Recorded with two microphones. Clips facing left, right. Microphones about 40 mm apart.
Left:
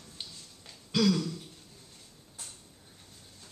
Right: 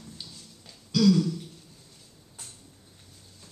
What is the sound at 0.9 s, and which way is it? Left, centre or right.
Throat clearing, left.